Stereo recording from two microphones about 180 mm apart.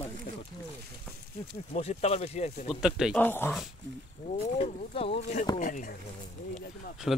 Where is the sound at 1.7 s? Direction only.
40° left (ahead or behind).